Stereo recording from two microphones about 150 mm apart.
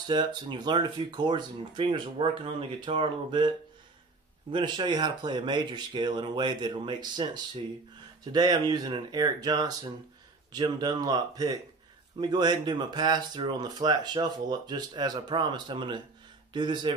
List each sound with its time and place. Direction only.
0.0 s speech: 30° right (ahead or behind)